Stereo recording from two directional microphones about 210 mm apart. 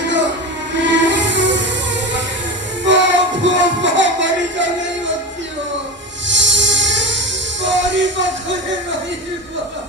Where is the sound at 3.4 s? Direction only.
60° right (ahead or behind).